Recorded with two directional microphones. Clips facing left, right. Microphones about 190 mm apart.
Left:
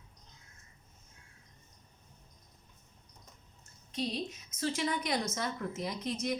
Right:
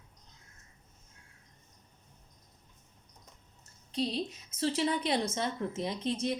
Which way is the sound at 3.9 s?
30° right (ahead or behind).